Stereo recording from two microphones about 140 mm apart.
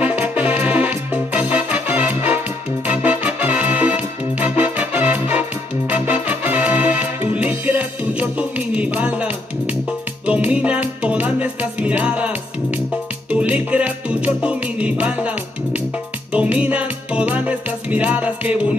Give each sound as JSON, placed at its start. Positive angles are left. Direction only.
{"t": 0.0, "sound": "music", "side_deg": -10}